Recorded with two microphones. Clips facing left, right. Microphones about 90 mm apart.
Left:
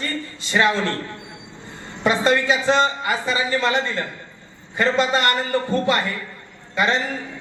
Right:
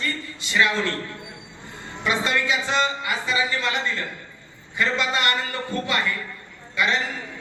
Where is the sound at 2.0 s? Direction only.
40° left (ahead or behind).